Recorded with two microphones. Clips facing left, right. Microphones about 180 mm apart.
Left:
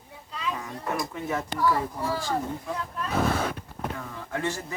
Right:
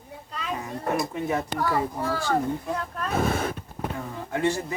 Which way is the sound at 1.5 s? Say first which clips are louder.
Even; 55° right (ahead or behind).